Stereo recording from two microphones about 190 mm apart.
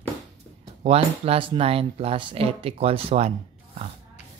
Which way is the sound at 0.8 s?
30° right (ahead or behind).